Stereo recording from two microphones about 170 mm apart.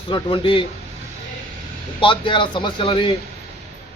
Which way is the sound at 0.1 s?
30° left (ahead or behind).